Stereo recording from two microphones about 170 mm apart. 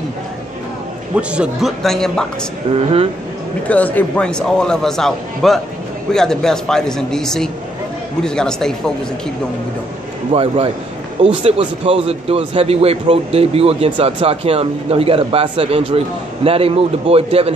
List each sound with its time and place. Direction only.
1.1 s a man's voice: 5° right (ahead or behind)
2.7 s a man's voice: 35° right (ahead or behind)
3.6 s a man's voice: 10° left (ahead or behind)
10.3 s a man's voice: 30° right (ahead or behind)